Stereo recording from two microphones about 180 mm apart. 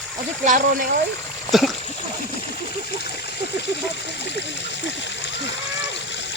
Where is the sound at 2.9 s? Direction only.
65° left (ahead or behind).